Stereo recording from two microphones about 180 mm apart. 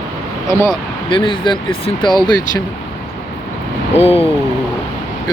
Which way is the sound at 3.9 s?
35° left (ahead or behind).